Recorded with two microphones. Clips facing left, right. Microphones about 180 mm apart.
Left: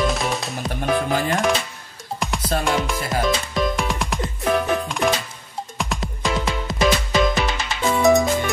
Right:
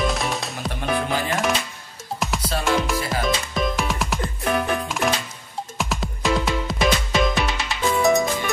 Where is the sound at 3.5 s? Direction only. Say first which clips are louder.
Left 1 dB; centre (ahead or behind).